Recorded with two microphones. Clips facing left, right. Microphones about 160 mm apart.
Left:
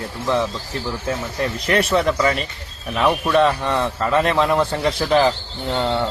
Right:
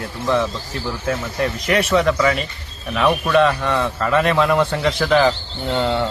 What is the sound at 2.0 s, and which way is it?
Speech, centre (ahead or behind).